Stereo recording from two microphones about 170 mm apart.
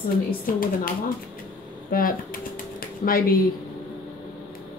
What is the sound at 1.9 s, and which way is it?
Speech, 55° left (ahead or behind).